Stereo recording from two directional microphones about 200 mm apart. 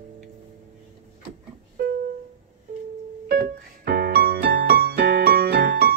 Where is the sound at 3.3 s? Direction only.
50° right (ahead or behind).